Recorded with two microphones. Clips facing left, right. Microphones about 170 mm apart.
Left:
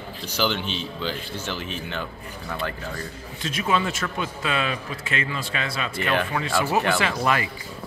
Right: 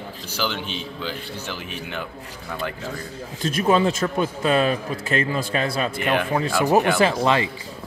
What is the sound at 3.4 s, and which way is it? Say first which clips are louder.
A man's voice: right 6 dB; 40° right (ahead or behind).